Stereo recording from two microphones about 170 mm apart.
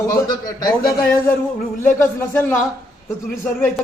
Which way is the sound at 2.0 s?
10° left (ahead or behind).